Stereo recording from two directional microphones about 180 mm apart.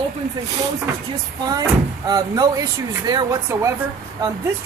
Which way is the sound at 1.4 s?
20° right (ahead or behind).